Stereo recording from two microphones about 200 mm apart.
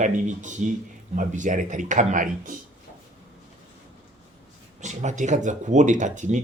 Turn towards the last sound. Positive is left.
turn(degrees=-35)  # may be behind; listen again after turning